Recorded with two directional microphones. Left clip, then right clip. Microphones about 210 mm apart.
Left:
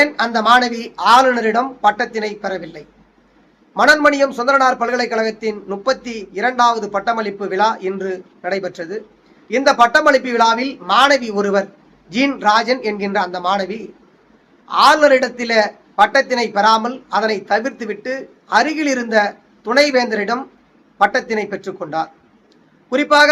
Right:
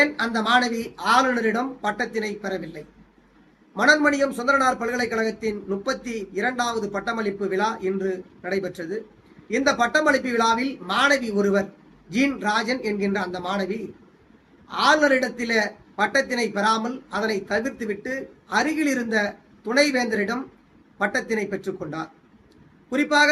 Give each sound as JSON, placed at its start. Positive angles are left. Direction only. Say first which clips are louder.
{"t": 0.0, "sound": "a man's voice", "louder": "left 7 dB", "side_deg": -15}